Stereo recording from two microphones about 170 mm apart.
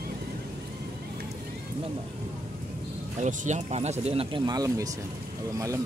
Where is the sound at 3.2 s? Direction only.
45° right (ahead or behind).